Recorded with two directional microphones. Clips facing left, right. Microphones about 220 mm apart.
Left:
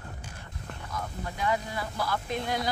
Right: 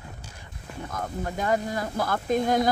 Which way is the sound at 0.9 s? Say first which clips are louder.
Right 5 dB; 50° right (ahead or behind).